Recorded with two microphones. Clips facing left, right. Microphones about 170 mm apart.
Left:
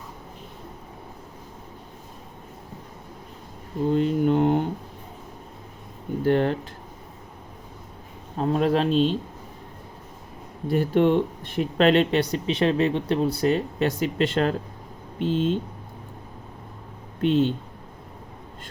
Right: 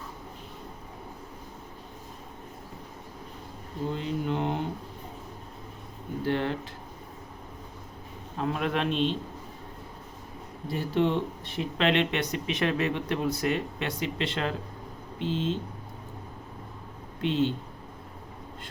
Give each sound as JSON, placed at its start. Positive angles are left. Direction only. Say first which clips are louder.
{"t": 3.9, "sound": "mantra", "louder": "left 11 dB", "side_deg": 45}
{"t": 6.2, "sound": "speech", "louder": "left 7 dB", "side_deg": 45}
{"t": 8.4, "sound": "speech", "louder": "left 7 dB", "side_deg": 35}
{"t": 10.7, "sound": "speech", "louder": "left 7 dB", "side_deg": 55}
{"t": 17.2, "sound": "speech", "louder": "left 6 dB", "side_deg": 50}